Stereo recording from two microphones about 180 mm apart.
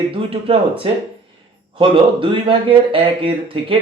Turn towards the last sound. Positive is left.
turn(degrees=-30)  # may be behind; listen again after turning